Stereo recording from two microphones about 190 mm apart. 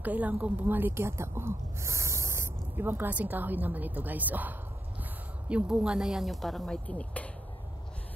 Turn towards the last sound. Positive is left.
turn(degrees=5)  # may be behind; listen again after turning